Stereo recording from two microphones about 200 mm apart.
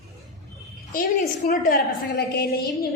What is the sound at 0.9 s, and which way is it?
A woman's voice, 50° left (ahead or behind).